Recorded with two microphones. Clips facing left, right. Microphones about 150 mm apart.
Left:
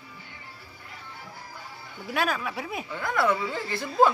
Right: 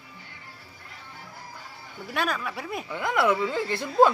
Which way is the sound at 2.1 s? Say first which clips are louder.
Left 1 dB; centre (ahead or behind).